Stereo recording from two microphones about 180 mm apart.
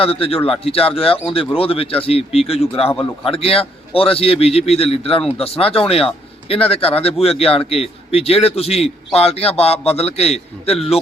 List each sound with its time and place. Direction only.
0.0 s speech: 30° left (ahead or behind)